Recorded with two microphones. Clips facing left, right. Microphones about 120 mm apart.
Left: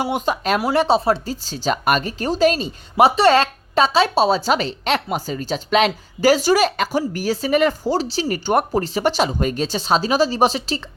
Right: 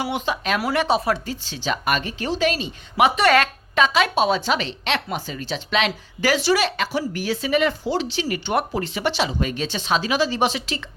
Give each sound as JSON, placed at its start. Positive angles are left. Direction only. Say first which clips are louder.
{"t": 0.0, "sound": "speech", "louder": "left 4 dB", "side_deg": 45}
{"t": 0.6, "sound": "speech", "louder": "left 4 dB", "side_deg": 30}